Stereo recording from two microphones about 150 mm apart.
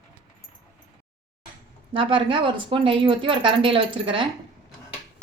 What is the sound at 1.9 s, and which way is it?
Speech, 35° right (ahead or behind).